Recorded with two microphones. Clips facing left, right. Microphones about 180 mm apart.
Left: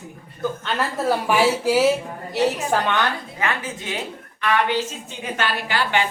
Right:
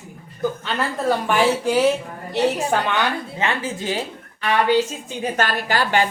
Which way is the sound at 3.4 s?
30° right (ahead or behind).